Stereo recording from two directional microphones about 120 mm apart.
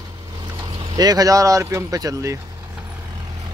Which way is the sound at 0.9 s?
30° right (ahead or behind).